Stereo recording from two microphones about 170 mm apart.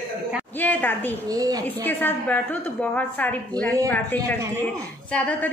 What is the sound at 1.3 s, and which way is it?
Speech, 20° right (ahead or behind).